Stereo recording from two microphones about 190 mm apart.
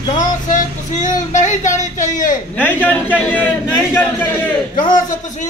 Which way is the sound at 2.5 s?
10° left (ahead or behind).